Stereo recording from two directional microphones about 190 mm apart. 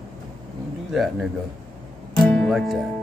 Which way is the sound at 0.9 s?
Centre (ahead or behind).